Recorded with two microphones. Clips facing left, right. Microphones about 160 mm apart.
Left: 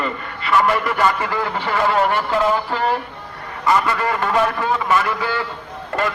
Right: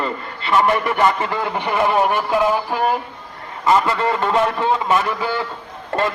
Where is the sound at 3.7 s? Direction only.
25° right (ahead or behind).